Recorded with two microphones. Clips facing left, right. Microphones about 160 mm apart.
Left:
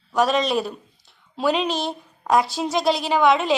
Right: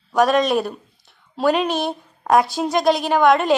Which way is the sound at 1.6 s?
55° right (ahead or behind).